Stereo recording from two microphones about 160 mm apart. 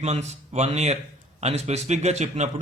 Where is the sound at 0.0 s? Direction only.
45° right (ahead or behind).